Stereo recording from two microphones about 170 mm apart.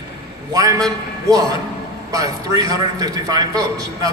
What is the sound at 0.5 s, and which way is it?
A man's voice, 20° right (ahead or behind).